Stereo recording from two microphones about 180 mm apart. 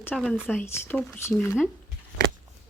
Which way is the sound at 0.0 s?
10° left (ahead or behind).